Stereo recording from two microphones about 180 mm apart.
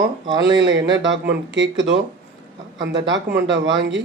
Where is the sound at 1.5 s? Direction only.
90° right.